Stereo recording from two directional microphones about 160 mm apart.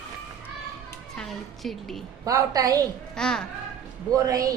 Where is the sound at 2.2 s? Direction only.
20° right (ahead or behind).